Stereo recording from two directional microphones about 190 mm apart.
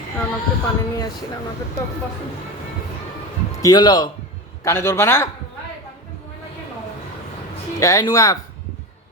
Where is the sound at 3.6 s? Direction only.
20° left (ahead or behind).